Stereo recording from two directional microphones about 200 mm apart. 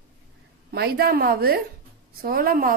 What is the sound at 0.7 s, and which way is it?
A woman's voice, 50° right (ahead or behind).